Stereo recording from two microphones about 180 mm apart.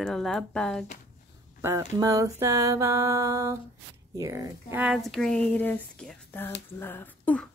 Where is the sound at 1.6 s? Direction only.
20° right (ahead or behind).